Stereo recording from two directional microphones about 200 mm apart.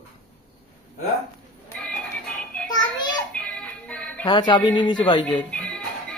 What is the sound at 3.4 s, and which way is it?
Music, 5° left (ahead or behind).